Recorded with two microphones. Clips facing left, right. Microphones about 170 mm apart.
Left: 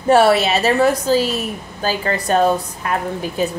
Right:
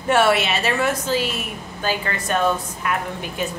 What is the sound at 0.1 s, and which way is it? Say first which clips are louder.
A woman's voice: left 5 dB; 35° left (ahead or behind).